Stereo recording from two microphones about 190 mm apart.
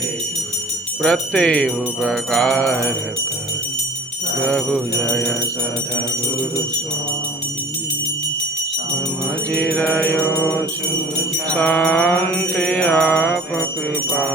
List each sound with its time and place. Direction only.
1.0 s music: 5° left (ahead or behind)
4.4 s music: 5° left (ahead or behind)
9.5 s music: 5° left (ahead or behind)